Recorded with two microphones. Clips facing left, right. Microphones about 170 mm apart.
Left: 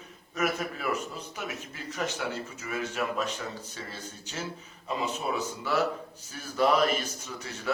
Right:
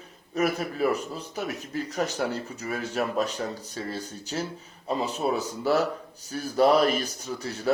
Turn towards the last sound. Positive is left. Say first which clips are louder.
# right 6 dB
turn(degrees=-35)  # may be behind; listen again after turning